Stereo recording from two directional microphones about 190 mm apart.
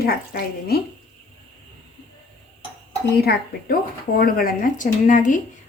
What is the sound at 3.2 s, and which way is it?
A woman's voice, 55° left (ahead or behind).